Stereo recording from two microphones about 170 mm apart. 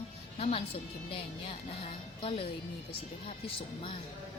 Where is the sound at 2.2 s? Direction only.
35° left (ahead or behind).